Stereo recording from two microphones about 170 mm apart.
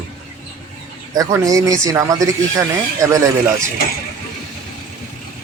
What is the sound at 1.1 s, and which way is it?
Speech, 20° right (ahead or behind).